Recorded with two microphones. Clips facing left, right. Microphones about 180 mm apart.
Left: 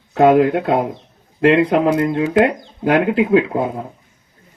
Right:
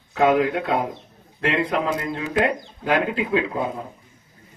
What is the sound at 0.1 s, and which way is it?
Speech, 55° left (ahead or behind).